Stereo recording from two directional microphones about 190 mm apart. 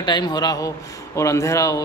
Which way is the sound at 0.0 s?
20° left (ahead or behind).